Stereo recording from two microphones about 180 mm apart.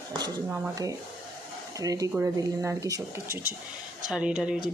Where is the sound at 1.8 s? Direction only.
20° right (ahead or behind).